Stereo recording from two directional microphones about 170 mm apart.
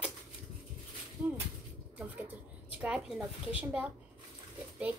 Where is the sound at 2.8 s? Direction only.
5° right (ahead or behind).